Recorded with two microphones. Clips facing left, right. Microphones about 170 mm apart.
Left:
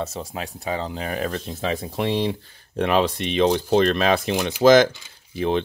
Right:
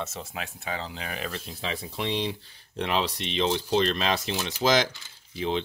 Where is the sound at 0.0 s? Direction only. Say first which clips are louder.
Left 6 dB; 35° left (ahead or behind).